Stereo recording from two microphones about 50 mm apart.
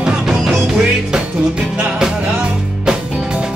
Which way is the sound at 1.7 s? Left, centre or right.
Centre.